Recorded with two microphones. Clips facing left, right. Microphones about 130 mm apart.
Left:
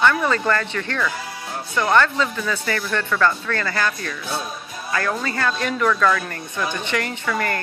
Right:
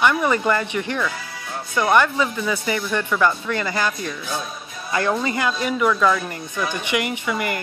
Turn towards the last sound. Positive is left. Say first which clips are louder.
# even
turn(degrees=-15)  # may be behind; listen again after turning